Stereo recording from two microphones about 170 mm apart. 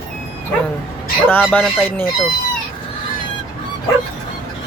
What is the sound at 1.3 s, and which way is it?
Speech, 10° left (ahead or behind).